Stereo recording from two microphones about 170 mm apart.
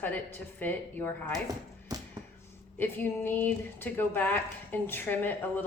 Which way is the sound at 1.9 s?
20° right (ahead or behind).